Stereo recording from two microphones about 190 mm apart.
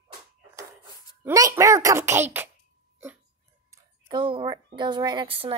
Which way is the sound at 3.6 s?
25° right (ahead or behind).